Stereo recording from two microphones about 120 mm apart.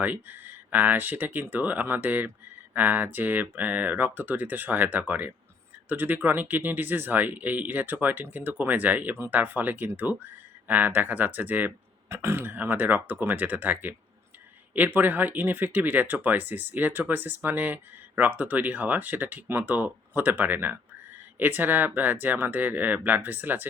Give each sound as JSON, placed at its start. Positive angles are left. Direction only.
{"t": 0.0, "sound": "speech", "side_deg": -15}